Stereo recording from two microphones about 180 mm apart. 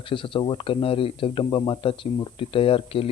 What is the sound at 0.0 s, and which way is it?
Speech, 30° left (ahead or behind).